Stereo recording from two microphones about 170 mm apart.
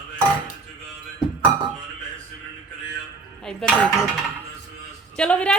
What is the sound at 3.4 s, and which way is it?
Dishes, 5° left (ahead or behind).